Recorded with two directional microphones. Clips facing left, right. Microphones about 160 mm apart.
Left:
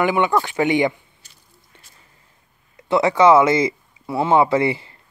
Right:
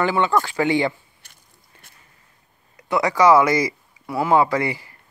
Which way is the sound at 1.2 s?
55° right (ahead or behind).